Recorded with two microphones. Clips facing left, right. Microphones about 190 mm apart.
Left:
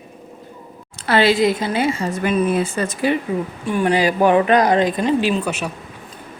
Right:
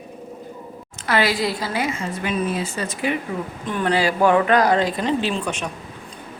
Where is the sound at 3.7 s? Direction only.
10° left (ahead or behind).